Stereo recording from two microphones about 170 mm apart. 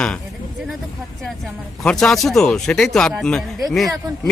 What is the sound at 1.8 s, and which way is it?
Speech, 5° left (ahead or behind).